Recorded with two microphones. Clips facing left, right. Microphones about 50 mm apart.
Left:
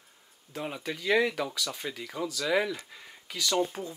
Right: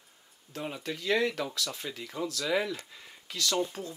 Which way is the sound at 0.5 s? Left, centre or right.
Centre.